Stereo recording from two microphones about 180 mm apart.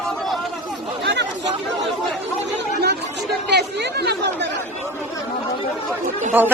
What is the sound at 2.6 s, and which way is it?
Chatter, 65° right (ahead or behind).